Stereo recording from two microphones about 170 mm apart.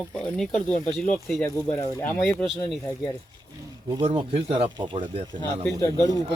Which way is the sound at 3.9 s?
35° right (ahead or behind).